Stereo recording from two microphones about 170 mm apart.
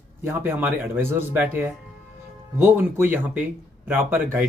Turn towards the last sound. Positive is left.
turn(degrees=-15)  # may be behind; listen again after turning